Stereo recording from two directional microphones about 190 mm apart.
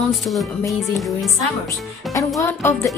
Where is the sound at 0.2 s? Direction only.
Centre (ahead or behind).